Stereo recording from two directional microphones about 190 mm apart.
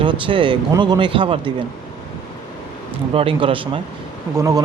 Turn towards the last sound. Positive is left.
turn(degrees=-15)  # may be behind; listen again after turning